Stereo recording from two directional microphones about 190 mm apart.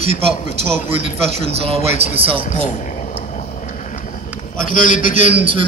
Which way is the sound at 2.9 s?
40° left (ahead or behind).